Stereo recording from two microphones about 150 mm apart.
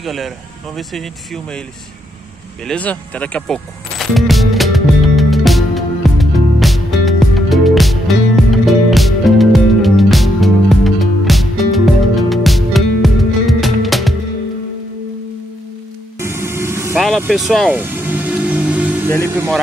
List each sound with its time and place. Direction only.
0.0 s speech: centre (ahead or behind)
2.6 s music: 10° left (ahead or behind)
16.2 s music: 15° right (ahead or behind)
16.9 s vehicle: centre (ahead or behind)
17.3 s music: centre (ahead or behind)
19.0 s speech: 20° left (ahead or behind)